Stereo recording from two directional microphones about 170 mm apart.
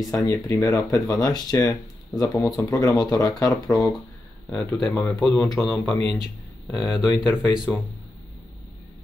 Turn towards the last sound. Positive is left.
turn(degrees=5)  # may be behind; listen again after turning